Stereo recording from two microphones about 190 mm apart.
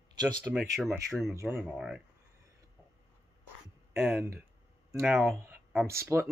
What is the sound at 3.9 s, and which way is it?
Speech, 10° right (ahead or behind).